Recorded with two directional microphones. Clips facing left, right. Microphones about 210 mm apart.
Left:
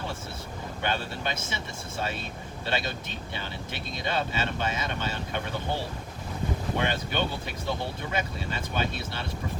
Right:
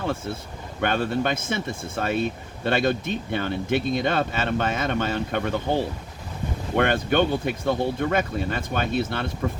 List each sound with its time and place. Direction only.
0.8 s speech: 55° right (ahead or behind)
6.7 s speech: 55° right (ahead or behind)